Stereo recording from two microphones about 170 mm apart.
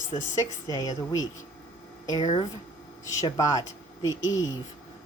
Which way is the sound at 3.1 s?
20° left (ahead or behind).